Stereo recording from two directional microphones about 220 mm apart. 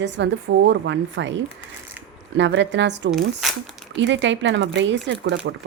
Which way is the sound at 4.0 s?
55° right (ahead or behind).